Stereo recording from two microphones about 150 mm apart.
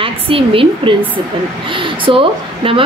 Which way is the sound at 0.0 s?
35° right (ahead or behind).